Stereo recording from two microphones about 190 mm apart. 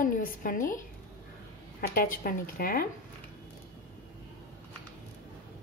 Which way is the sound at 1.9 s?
50° left (ahead or behind).